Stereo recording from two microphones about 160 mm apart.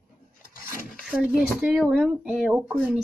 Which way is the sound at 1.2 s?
5° right (ahead or behind).